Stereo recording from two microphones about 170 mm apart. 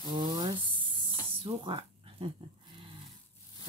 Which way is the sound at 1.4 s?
30° right (ahead or behind).